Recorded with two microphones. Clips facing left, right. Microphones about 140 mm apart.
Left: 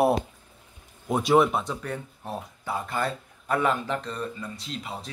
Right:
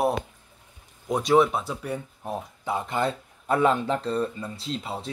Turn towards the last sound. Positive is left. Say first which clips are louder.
# right 4 dB
turn(degrees=-30)  # may be behind; listen again after turning